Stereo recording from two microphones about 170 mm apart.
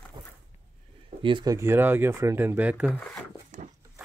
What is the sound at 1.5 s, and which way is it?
Speech, 15° right (ahead or behind).